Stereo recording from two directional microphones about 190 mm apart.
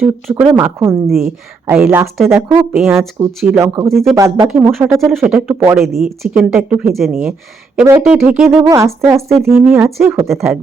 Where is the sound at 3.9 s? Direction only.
Centre (ahead or behind).